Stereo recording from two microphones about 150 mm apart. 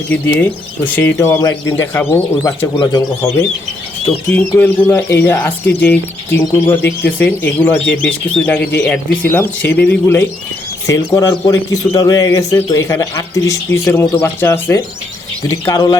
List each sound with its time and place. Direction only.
0.1 s speech: 10° left (ahead or behind)
2.7 s a man's voice: 30° left (ahead or behind)
4.3 s a man's voice: 15° left (ahead or behind)